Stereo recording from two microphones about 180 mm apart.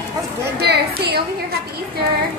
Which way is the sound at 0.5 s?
65° right (ahead or behind).